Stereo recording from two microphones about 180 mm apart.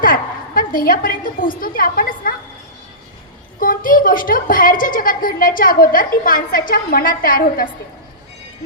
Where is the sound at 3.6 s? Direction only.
50° left (ahead or behind).